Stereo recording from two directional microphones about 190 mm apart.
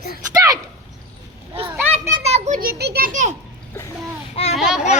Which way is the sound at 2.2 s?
35° right (ahead or behind).